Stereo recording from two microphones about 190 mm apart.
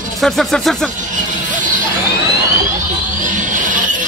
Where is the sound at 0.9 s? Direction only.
40° right (ahead or behind).